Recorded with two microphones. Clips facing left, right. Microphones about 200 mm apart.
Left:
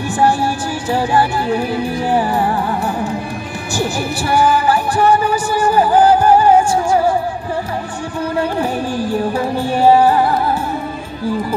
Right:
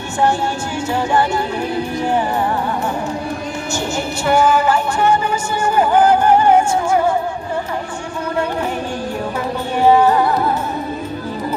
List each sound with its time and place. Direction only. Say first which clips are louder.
3.7 s music: left 4 dB; 35° left (ahead or behind)
9.8 s music: left 1 dB; 30° left (ahead or behind)